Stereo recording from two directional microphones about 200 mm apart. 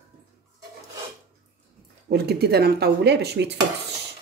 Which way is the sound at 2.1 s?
55° right (ahead or behind).